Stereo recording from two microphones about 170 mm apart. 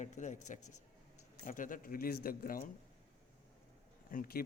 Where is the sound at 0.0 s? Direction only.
45° left (ahead or behind).